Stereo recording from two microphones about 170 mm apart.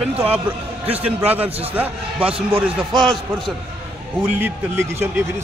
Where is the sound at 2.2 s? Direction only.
35° right (ahead or behind).